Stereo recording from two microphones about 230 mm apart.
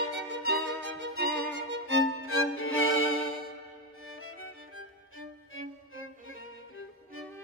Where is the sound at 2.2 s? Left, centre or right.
Left.